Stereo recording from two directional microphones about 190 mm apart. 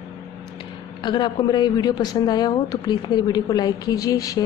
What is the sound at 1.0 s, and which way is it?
A woman's voice, 25° left (ahead or behind).